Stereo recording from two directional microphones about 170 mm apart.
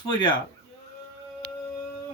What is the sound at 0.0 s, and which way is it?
Speech, 25° left (ahead or behind).